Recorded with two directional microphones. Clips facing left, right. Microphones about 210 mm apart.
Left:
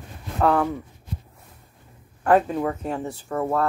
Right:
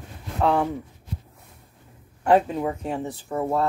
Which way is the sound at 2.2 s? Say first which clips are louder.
Even; 15° right (ahead or behind).